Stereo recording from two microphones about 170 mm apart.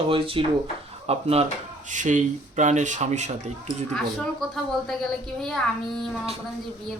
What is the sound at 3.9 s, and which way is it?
A woman's voice, centre (ahead or behind).